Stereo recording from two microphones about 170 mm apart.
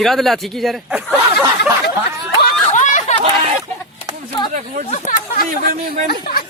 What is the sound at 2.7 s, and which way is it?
Chatter, 45° left (ahead or behind).